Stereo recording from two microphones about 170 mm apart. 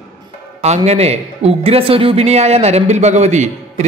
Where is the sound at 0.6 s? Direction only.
40° right (ahead or behind).